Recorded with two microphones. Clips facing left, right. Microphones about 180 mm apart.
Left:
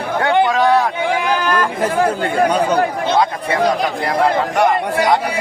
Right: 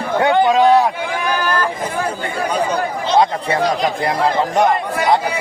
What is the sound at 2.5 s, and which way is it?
Speech, 55° left (ahead or behind).